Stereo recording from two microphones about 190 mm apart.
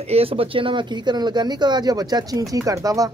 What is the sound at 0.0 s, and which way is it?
Speech, 30° right (ahead or behind).